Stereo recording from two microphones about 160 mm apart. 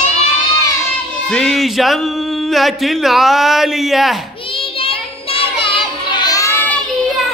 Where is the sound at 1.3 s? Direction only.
5° left (ahead or behind).